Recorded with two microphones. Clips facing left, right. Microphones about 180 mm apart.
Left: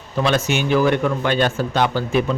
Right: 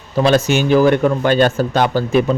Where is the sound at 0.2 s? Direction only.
35° right (ahead or behind).